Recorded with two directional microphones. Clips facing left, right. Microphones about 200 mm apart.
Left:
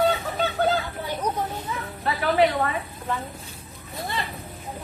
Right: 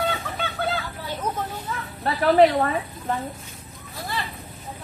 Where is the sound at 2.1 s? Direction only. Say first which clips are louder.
Right 5 dB; 40° right (ahead or behind).